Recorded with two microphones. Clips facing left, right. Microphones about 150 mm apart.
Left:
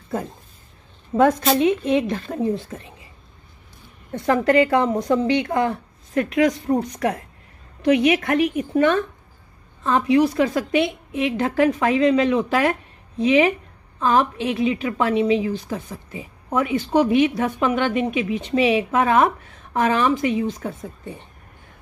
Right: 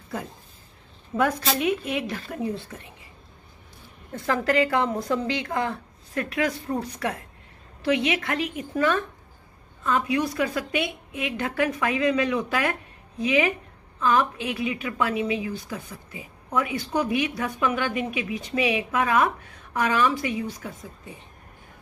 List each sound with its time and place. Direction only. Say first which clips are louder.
1.1 s a woman's voice: left 7 dB; 25° left (ahead or behind)
4.1 s a woman's voice: left 6 dB; 30° left (ahead or behind)